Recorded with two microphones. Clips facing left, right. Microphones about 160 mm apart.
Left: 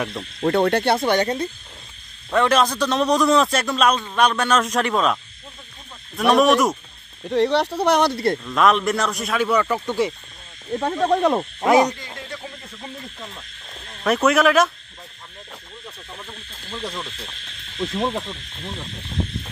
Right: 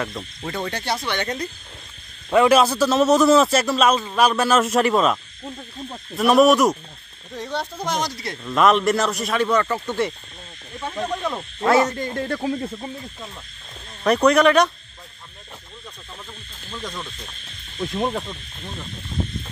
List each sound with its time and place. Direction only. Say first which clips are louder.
0.4 s speech: left 11 dB; 60° left (ahead or behind)
1.1 s speech: left 6 dB; 30° left (ahead or behind)
2.3 s a man's voice: right 3 dB; 10° right (ahead or behind)
7.2 s speech: left 10 dB; 70° left (ahead or behind)
8.5 s a man's voice: right 4 dB; centre (ahead or behind)
10.8 s speech: left 7 dB; 55° left (ahead or behind)
11.6 s speech: left 1 dB; 15° left (ahead or behind)
12.0 s speech: right 10 dB; 50° right (ahead or behind)
14.0 s a man's voice: right 2 dB; 5° left (ahead or behind)
16.7 s a man's voice: left 2 dB; 10° left (ahead or behind)